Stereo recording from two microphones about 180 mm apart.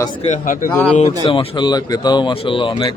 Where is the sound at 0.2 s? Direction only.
45° left (ahead or behind).